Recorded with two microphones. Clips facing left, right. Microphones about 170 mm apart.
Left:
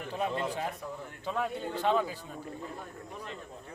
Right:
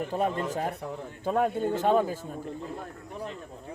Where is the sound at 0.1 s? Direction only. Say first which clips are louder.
Even; 45° right (ahead or behind).